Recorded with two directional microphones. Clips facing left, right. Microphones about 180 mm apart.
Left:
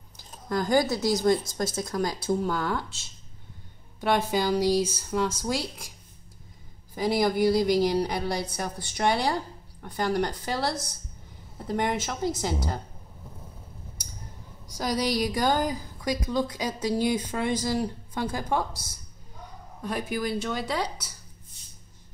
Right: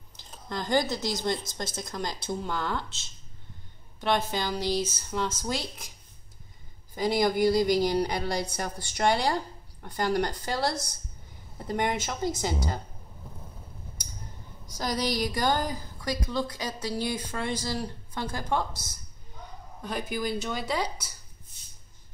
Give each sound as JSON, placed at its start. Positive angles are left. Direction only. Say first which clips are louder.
{"t": 0.5, "sound": "speech", "louder": "left 3 dB", "side_deg": 5}
{"t": 4.0, "sound": "a woman's voice", "louder": "left 3 dB", "side_deg": 10}
{"t": 7.0, "sound": "speech", "louder": "left 1 dB", "side_deg": 5}
{"t": 14.8, "sound": "a woman's voice", "louder": "left 2 dB", "side_deg": 10}
{"t": 19.8, "sound": "speech", "louder": "left 2 dB", "side_deg": 0}